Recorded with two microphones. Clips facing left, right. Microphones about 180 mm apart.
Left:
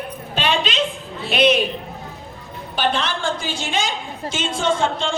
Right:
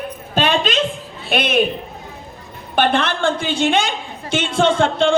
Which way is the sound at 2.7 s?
55° right (ahead or behind).